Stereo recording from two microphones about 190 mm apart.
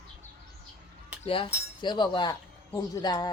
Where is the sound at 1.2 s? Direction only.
30° left (ahead or behind).